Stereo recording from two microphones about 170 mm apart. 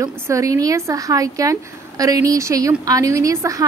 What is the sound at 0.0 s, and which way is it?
A woman's voice, 20° right (ahead or behind).